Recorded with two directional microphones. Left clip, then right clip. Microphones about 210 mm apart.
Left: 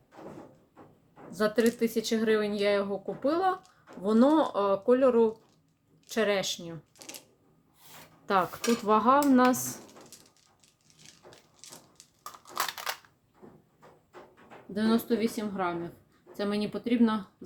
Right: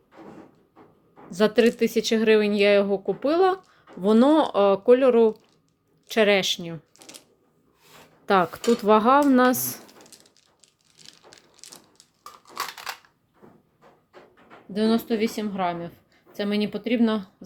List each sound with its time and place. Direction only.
1.3 s speech: 35° right (ahead or behind)
8.3 s speech: 25° right (ahead or behind)
12.5 s typewriter: 5° left (ahead or behind)
14.7 s speech: 25° right (ahead or behind)